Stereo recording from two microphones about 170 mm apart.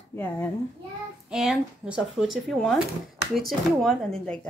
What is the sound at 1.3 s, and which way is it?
A woman's voice, 5° right (ahead or behind).